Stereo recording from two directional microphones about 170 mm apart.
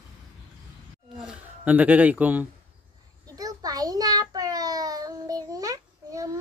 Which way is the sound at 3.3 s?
20° right (ahead or behind).